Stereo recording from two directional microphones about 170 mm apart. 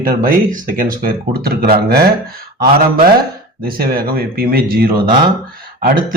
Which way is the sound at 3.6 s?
60° right (ahead or behind).